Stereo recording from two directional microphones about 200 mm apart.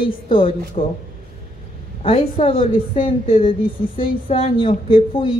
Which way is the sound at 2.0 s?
30° left (ahead or behind).